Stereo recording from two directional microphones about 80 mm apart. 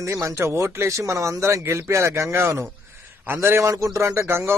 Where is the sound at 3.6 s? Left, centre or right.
Right.